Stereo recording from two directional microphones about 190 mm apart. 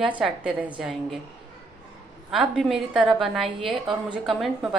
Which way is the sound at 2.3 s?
Centre (ahead or behind).